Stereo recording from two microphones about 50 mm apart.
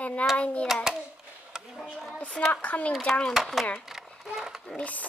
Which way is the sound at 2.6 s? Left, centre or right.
Left.